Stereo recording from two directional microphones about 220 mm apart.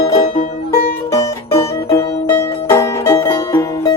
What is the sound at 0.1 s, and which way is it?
Music, 30° left (ahead or behind).